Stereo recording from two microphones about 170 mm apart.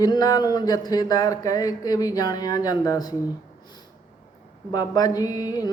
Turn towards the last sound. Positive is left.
turn(degrees=20)  # may be behind; listen again after turning